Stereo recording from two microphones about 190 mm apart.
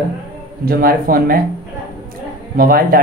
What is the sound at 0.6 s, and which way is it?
Speech, 50° right (ahead or behind).